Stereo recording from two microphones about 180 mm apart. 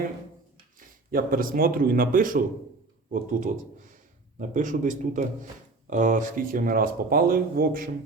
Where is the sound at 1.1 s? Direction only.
55° right (ahead or behind).